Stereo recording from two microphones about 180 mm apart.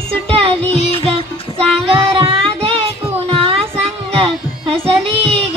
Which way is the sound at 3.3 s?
30° right (ahead or behind).